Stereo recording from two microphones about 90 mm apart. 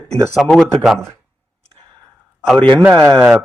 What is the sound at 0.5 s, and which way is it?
Speech, centre (ahead or behind).